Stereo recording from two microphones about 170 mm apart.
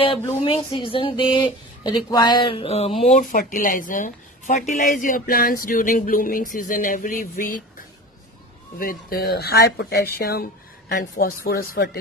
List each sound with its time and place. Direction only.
0.4 s a woman's voice: 30° left (ahead or behind)
4.9 s a sound: 50° left (ahead or behind)
8.7 s speech: 60° left (ahead or behind)